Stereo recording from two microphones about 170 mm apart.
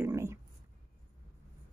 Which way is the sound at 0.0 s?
15° right (ahead or behind).